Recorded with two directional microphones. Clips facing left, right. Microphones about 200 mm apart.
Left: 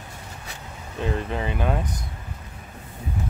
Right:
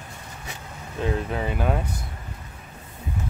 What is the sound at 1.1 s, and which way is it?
Speech, 5° right (ahead or behind).